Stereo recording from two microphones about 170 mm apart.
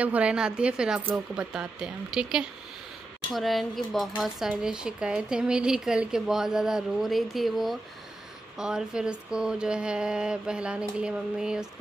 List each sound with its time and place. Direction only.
0.0 s speech: 5° right (ahead or behind)